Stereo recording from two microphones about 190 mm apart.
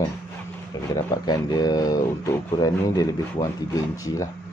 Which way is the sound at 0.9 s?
20° left (ahead or behind).